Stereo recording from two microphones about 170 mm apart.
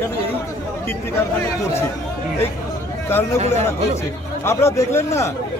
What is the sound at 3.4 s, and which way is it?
Speech, 40° right (ahead or behind).